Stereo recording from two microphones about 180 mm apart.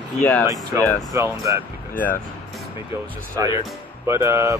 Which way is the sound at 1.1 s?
15° right (ahead or behind).